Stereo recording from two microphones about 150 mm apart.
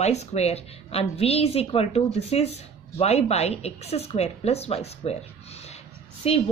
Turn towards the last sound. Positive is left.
turn(degrees=45)  # may be behind; listen again after turning